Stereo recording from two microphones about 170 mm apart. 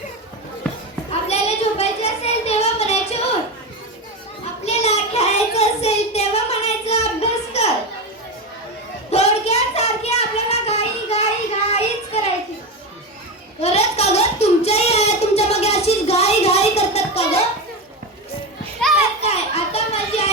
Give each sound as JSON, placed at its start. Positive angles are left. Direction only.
{"t": 1.3, "sound": "child singing", "side_deg": 40}
{"t": 4.6, "sound": "child singing", "side_deg": 40}
{"t": 9.0, "sound": "child singing", "side_deg": 40}
{"t": 13.6, "sound": "a sound", "side_deg": 40}
{"t": 18.9, "sound": "children playing", "side_deg": 40}